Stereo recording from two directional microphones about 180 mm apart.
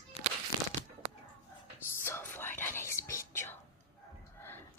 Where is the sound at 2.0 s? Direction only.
10° left (ahead or behind).